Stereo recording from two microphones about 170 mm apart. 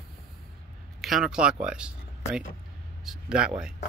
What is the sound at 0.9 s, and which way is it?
Speech, centre (ahead or behind).